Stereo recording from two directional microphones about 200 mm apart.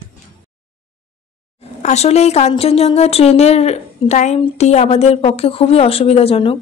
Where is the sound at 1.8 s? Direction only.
35° left (ahead or behind).